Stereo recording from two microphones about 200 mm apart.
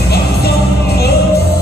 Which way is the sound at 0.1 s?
55° left (ahead or behind).